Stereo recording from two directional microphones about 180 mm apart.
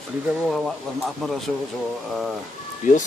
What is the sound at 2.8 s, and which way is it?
Speech, 45° left (ahead or behind).